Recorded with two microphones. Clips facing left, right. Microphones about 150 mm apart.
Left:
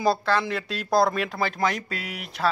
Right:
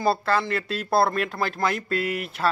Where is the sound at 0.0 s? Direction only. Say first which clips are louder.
Even; 5° right (ahead or behind).